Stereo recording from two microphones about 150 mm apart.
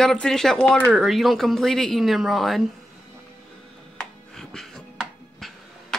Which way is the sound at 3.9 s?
5° left (ahead or behind).